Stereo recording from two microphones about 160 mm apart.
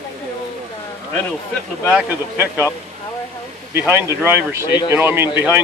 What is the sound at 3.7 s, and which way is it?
Speech, 15° right (ahead or behind).